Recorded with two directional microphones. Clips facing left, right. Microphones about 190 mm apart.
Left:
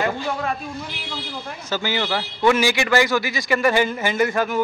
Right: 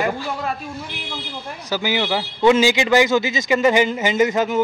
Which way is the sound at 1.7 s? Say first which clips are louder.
Right 2 dB; 15° right (ahead or behind).